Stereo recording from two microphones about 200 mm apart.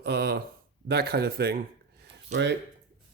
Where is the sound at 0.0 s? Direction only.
55° right (ahead or behind).